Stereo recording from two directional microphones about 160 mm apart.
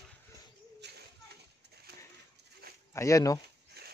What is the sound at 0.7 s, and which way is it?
Bird, 90° right.